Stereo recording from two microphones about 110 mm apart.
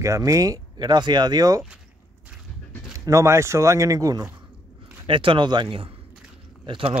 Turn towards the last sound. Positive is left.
turn(degrees=-50)  # may be behind; listen again after turning